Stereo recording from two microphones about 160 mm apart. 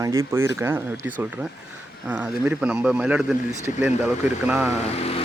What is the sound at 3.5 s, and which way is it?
Speech, 15° right (ahead or behind).